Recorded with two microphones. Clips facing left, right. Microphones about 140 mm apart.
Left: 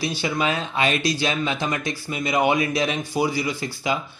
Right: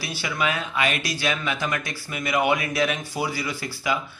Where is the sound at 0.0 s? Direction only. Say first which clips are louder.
Left 3 dB; 20° left (ahead or behind).